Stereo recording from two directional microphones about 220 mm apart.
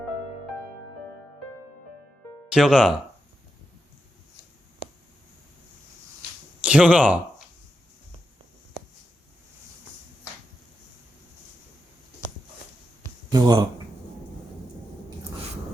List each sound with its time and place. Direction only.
2.5 s speech: centre (ahead or behind)
6.6 s speech: 5° right (ahead or behind)
13.0 s a sound: 15° right (ahead or behind)